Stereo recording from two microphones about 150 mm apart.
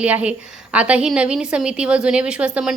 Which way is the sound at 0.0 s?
10° right (ahead or behind).